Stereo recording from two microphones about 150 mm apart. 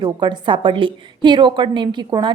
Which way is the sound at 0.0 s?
30° right (ahead or behind).